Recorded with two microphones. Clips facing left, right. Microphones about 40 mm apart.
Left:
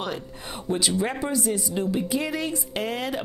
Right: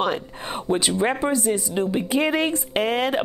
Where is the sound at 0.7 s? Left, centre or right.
Centre.